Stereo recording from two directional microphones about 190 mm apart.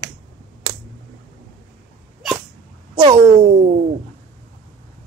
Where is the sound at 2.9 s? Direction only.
20° right (ahead or behind).